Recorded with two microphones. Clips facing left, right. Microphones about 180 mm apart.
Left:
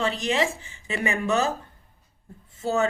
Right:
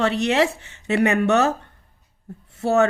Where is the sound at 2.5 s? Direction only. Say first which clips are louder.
Right 6 dB; 70° right (ahead or behind).